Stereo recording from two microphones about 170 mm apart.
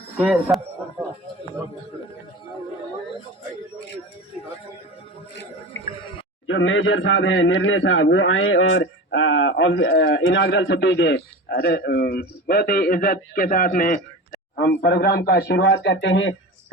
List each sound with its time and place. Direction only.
0.2 s a sound: 5° right (ahead or behind)
7.1 s a man's voice: 90° left; by 14.0 s 50° left (ahead or behind)
14.6 s a man's voice: 70° left (ahead or behind); by 16.3 s 90° left